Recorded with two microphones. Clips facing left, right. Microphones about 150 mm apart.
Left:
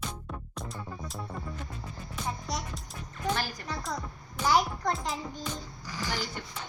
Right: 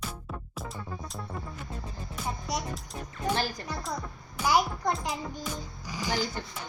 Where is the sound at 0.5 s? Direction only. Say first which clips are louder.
Right 1 dB; centre (ahead or behind).